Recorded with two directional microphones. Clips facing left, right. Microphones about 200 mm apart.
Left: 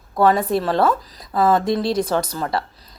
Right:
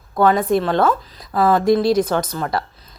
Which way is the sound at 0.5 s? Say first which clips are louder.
Right 2 dB; 30° left (ahead or behind).